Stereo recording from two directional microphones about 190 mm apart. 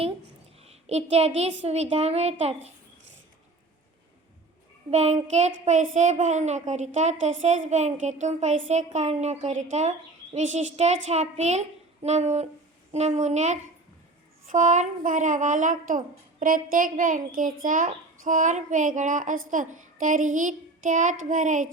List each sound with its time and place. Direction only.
0.6 s a sound: 35° right (ahead or behind)
1.6 s a woman's voice: 35° right (ahead or behind)
4.9 s a woman's voice: 35° right (ahead or behind)